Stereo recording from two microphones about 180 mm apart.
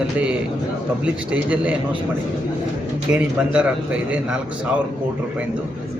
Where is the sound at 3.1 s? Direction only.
5° right (ahead or behind).